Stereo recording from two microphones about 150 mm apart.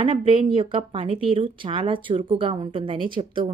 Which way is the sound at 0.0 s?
35° right (ahead or behind).